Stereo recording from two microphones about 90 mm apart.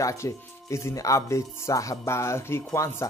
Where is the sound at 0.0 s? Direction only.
35° left (ahead or behind).